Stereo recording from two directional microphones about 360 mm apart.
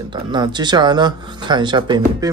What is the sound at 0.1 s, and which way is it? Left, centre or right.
Speech, centre.